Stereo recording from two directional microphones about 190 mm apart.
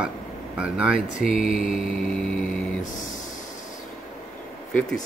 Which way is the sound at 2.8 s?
40° left (ahead or behind).